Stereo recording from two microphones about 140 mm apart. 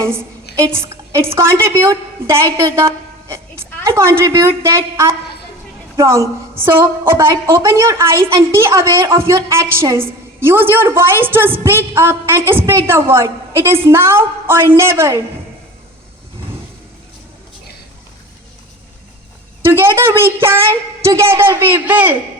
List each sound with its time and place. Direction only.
0.0 s a woman's voice: 20° right (ahead or behind)
19.6 s a woman's voice: 15° right (ahead or behind)